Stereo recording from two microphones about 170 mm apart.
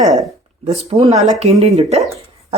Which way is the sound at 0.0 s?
20° right (ahead or behind).